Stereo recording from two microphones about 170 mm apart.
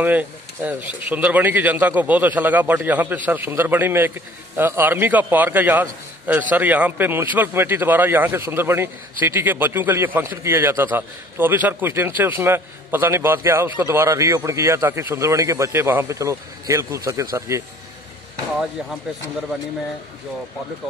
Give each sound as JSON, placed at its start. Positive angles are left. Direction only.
{"t": 0.0, "sound": "a man's voice", "side_deg": -10}